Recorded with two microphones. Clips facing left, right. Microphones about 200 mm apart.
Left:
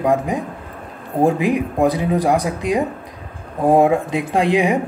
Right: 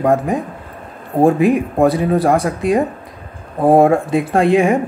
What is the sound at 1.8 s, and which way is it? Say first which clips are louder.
Speech: right 3 dB; 15° left (ahead or behind).